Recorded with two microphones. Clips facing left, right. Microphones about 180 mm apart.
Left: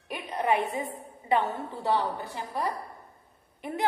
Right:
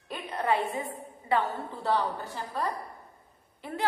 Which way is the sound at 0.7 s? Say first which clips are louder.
Left 1 dB; 20° left (ahead or behind).